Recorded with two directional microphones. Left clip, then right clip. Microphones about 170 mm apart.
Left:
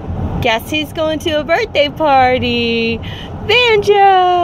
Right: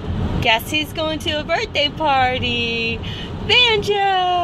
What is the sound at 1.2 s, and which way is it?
Speech, 45° left (ahead or behind).